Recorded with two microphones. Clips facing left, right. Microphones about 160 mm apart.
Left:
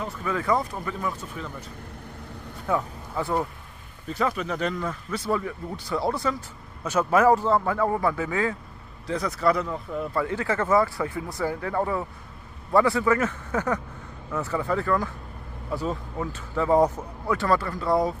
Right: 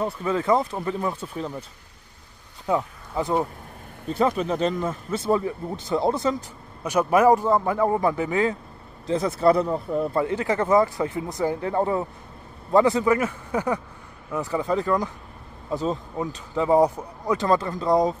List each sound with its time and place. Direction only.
0.0 s speech: 30° right (ahead or behind)
2.6 s a man's voice: 20° right (ahead or behind)
10.2 s a man's voice: 20° right (ahead or behind)